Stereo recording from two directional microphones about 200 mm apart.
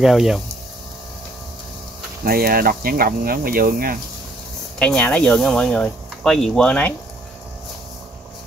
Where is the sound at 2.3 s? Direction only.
50° right (ahead or behind).